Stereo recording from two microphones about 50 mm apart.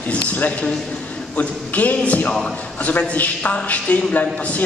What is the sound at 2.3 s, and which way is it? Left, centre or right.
Speech, centre.